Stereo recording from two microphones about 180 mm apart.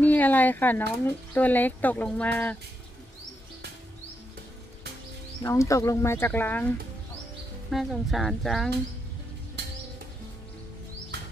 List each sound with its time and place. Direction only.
0.0 s speech: 10° left (ahead or behind)
5.4 s speech: 15° left (ahead or behind)
7.7 s speech: centre (ahead or behind)
9.6 s music: 65° right (ahead or behind)